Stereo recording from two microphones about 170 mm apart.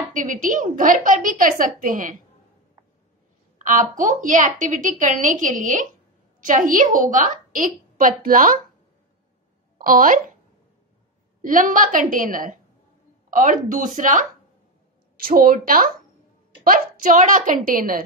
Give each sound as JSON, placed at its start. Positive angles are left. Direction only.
{"t": 0.1, "sound": "a woman's voice", "side_deg": -50}
{"t": 3.5, "sound": "a sound", "side_deg": -50}
{"t": 3.9, "sound": "a woman's voice", "side_deg": -50}
{"t": 9.8, "sound": "speech", "side_deg": -55}
{"t": 11.4, "sound": "a woman's voice", "side_deg": -50}